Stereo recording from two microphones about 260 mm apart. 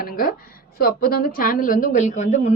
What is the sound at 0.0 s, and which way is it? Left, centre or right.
A woman's voice, left.